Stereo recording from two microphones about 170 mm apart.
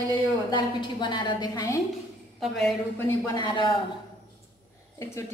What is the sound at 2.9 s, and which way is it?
Speech, 15° left (ahead or behind).